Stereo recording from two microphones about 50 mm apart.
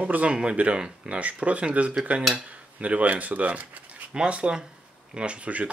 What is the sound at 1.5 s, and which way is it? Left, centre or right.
Speech, right.